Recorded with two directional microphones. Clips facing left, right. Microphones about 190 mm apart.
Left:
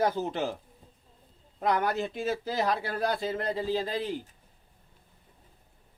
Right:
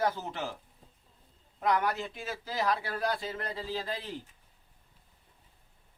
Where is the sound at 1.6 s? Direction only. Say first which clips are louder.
Left 2 dB; 25° left (ahead or behind).